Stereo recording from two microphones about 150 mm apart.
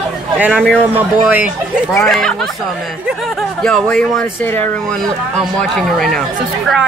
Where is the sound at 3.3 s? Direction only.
Centre (ahead or behind).